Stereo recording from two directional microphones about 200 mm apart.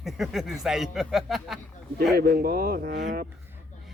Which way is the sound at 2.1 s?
50° right (ahead or behind).